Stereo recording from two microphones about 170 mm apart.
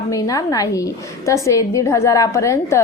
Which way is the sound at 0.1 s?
20° left (ahead or behind).